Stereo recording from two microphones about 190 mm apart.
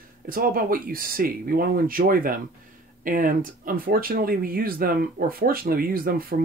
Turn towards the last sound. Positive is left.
turn(degrees=-50)  # may be behind; listen again after turning